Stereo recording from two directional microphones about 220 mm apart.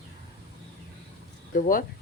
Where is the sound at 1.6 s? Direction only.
40° left (ahead or behind).